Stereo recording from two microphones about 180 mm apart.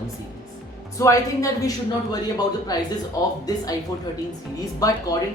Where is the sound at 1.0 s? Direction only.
20° left (ahead or behind).